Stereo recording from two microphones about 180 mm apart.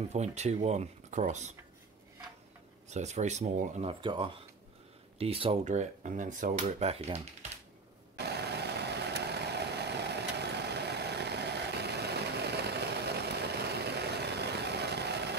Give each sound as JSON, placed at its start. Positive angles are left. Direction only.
{"t": 0.1, "sound": "speech", "side_deg": -40}
{"t": 2.9, "sound": "speech", "side_deg": -40}
{"t": 4.0, "sound": "speech", "side_deg": -30}
{"t": 8.2, "sound": "vehicle", "side_deg": -65}